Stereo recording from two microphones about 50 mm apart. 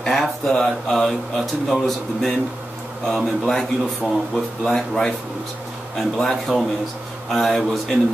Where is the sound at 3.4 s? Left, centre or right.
Centre.